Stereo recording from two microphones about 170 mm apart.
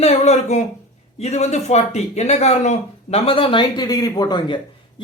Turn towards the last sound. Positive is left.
turn(degrees=25)  # may be behind; listen again after turning